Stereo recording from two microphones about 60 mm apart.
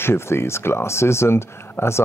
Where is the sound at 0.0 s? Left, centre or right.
Left.